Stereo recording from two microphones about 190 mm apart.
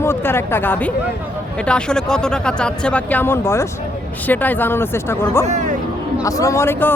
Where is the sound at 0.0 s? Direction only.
10° left (ahead or behind).